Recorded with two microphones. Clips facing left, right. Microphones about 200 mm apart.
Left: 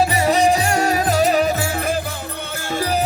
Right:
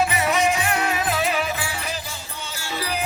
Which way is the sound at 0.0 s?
35° left (ahead or behind).